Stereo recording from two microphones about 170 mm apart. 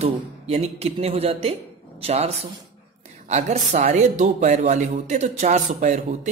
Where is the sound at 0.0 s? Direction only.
40° right (ahead or behind).